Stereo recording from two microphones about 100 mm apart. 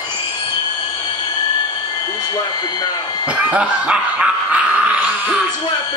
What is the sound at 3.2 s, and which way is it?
Dog, 10° right (ahead or behind).